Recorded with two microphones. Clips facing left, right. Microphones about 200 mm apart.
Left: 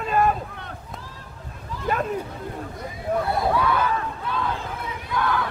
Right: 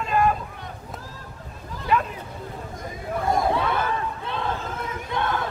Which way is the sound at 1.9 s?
45° left (ahead or behind).